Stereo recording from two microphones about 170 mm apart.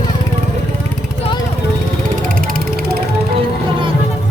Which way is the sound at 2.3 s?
60° right (ahead or behind).